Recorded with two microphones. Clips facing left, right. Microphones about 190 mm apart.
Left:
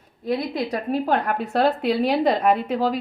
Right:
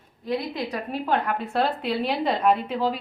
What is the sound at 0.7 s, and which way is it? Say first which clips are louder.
A woman's voice: left 3 dB; 40° left (ahead or behind).